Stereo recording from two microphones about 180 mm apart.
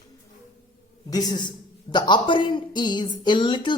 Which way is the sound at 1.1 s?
20° left (ahead or behind).